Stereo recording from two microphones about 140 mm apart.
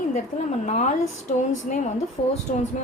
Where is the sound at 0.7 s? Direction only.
55° left (ahead or behind).